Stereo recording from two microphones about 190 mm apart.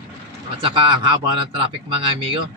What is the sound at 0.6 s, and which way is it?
Speech, 25° right (ahead or behind).